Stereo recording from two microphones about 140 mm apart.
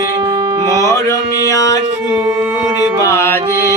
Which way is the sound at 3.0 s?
20° left (ahead or behind).